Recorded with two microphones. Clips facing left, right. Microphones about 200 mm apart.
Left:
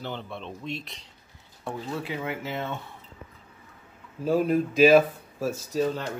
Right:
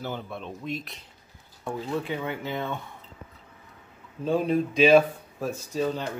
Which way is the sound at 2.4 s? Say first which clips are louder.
Right 1 dB; 5° left (ahead or behind).